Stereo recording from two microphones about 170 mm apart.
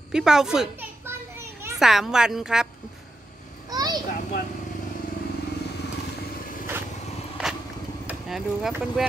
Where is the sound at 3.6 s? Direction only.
25° right (ahead or behind).